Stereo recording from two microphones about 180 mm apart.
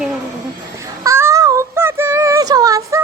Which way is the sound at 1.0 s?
15° right (ahead or behind).